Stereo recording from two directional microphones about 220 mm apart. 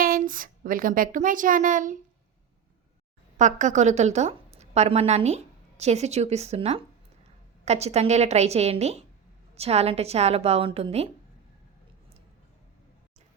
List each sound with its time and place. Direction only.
0.0 s speech: 40° right (ahead or behind)
3.3 s a woman's voice: 35° right (ahead or behind)